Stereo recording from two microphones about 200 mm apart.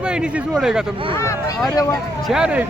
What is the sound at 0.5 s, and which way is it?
Speech, centre (ahead or behind).